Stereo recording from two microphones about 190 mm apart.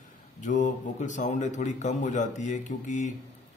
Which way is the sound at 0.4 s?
40° left (ahead or behind).